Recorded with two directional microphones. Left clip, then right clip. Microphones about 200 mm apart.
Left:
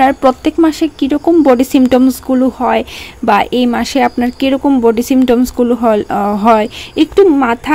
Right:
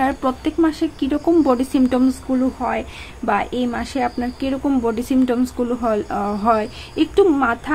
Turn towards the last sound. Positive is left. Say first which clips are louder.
# left 7 dB
turn(degrees=30)  # may be behind; listen again after turning